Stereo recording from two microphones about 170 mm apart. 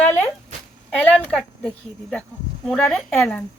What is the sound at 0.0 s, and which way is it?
Dog, 10° left (ahead or behind).